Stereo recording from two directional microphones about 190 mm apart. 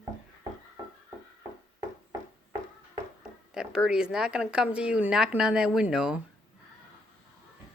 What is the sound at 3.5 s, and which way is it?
Speech, 5° right (ahead or behind).